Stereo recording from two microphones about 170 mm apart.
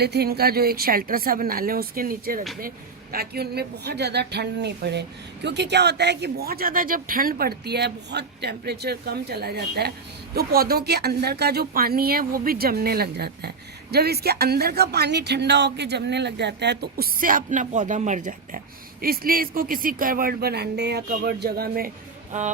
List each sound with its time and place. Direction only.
0.0 s a woman's voice: 70° right (ahead or behind); by 18.6 s 50° right (ahead or behind)
19.0 s speech: 60° right (ahead or behind)
22.3 s speech: 45° right (ahead or behind)